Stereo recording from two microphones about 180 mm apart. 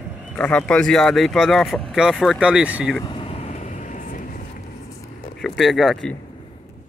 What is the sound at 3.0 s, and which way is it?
Vehicle, 25° left (ahead or behind).